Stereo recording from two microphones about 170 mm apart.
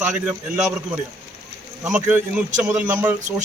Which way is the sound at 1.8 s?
10° right (ahead or behind).